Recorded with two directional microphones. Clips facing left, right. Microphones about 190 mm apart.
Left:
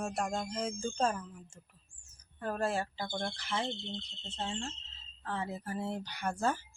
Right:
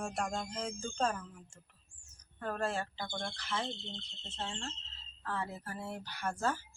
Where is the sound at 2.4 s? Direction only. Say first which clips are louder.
Left 2 dB; 10° left (ahead or behind).